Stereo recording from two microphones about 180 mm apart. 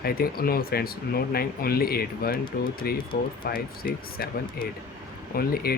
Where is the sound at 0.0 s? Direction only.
55° left (ahead or behind).